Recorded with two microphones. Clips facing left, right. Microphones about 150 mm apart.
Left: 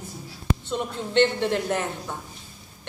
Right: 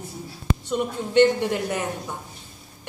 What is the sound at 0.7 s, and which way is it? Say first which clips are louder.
A man's voice: right 4 dB; 10° right (ahead or behind).